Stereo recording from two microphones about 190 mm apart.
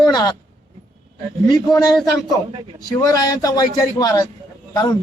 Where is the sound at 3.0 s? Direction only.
20° left (ahead or behind).